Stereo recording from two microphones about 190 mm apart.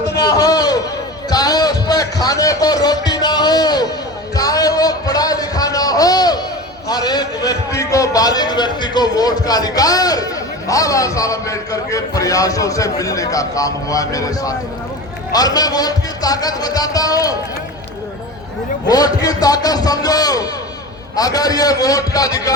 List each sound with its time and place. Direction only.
0.2 s a sound: 20° left (ahead or behind)
6.8 s a man's voice: 20° left (ahead or behind)
18.9 s a man's voice: 20° left (ahead or behind)